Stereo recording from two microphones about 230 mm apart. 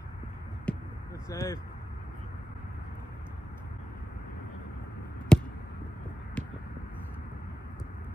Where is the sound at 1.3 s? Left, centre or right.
Centre.